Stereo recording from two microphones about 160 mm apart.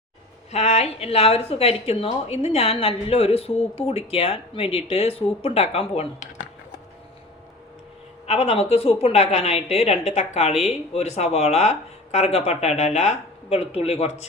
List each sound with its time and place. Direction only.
0.5 s speech: 40° left (ahead or behind)
8.3 s speech: 40° left (ahead or behind)